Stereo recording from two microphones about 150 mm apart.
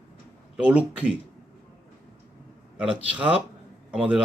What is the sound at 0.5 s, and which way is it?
Speech, 10° right (ahead or behind).